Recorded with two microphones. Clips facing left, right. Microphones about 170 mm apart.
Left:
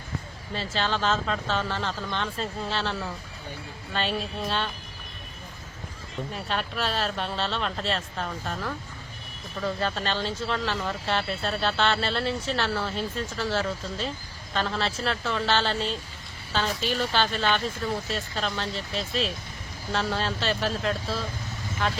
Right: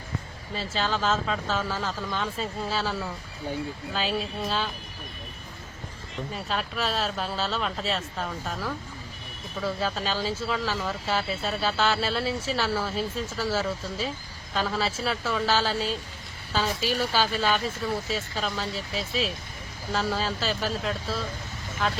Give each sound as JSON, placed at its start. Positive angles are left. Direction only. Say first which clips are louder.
{"t": 0.5, "sound": "speech", "louder": "even", "side_deg": -5}
{"t": 6.3, "sound": "a woman's voice", "louder": "even", "side_deg": 0}